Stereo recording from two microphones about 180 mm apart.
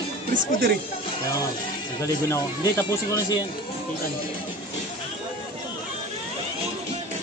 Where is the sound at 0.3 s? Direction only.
60° right (ahead or behind).